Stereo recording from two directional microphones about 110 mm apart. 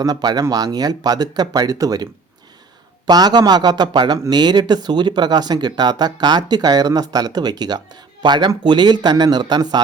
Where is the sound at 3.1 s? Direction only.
40° right (ahead or behind).